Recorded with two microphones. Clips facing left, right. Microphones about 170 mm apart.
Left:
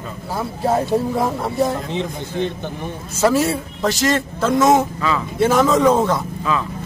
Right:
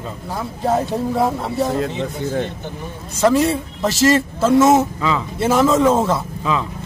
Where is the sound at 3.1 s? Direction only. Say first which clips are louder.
Right 2 dB; 5° left (ahead or behind).